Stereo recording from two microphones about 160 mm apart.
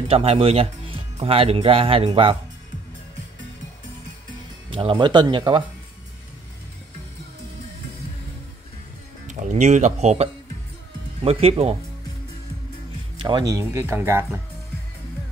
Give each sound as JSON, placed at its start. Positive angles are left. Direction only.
{"t": 0.1, "sound": "speech", "side_deg": -40}
{"t": 4.6, "sound": "speech", "side_deg": -30}
{"t": 9.3, "sound": "speech", "side_deg": -50}
{"t": 13.2, "sound": "speech", "side_deg": -25}